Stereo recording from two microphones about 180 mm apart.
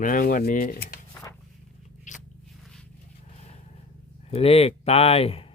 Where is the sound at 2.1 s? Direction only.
45° left (ahead or behind).